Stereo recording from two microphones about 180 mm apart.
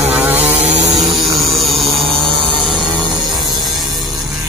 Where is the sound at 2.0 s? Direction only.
30° right (ahead or behind).